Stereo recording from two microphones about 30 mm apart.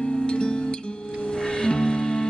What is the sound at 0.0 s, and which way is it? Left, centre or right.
Music, left.